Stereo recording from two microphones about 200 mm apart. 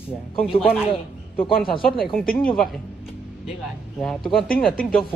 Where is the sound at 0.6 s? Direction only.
5° right (ahead or behind).